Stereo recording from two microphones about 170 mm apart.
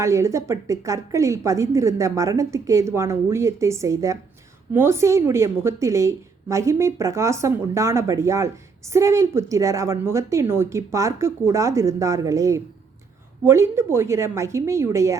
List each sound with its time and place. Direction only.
0.0 s a woman's voice: 15° right (ahead or behind)